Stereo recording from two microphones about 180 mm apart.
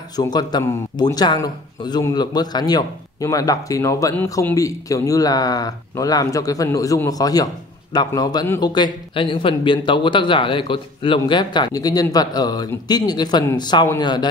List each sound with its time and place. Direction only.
0.1 s a man's voice: 20° left (ahead or behind)